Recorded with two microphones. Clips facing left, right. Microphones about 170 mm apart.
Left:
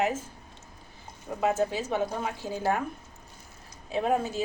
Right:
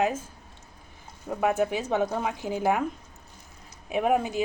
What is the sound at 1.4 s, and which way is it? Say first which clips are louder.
Speech: right 1 dB; 15° right (ahead or behind).